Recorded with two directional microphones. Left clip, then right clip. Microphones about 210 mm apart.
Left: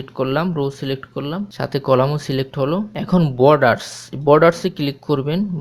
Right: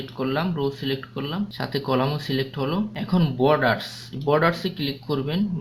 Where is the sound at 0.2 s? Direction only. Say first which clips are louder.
Left 6 dB; 45° left (ahead or behind).